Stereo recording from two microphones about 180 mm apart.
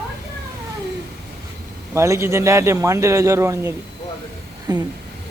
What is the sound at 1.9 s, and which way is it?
A man's voice, 15° right (ahead or behind).